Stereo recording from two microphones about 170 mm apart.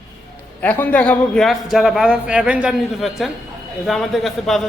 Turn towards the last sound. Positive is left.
turn(degrees=0)  # may be behind; listen again after turning